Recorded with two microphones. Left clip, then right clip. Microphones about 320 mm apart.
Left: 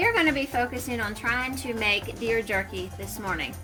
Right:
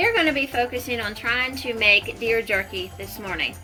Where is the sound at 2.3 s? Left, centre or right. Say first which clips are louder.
Right 4 dB; left.